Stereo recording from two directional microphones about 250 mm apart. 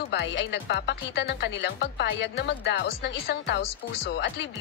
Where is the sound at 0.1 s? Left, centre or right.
Left.